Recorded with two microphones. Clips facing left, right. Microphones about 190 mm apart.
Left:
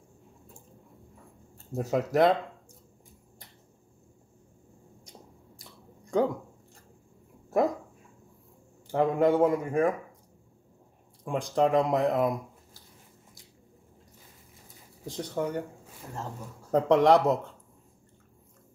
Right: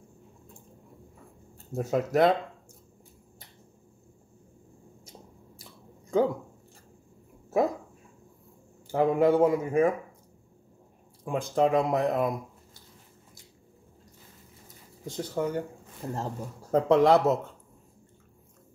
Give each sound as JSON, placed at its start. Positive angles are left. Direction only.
{"t": 1.7, "sound": "speech", "side_deg": 0}
{"t": 5.6, "sound": "chewing", "side_deg": 0}
{"t": 8.8, "sound": "speech", "side_deg": -5}
{"t": 11.2, "sound": "speech", "side_deg": 0}
{"t": 15.0, "sound": "speech", "side_deg": 0}
{"t": 16.0, "sound": "speech", "side_deg": -35}
{"t": 16.7, "sound": "speech", "side_deg": 0}